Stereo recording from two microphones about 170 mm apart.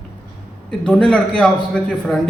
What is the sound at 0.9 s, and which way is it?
A man's voice, 5° left (ahead or behind).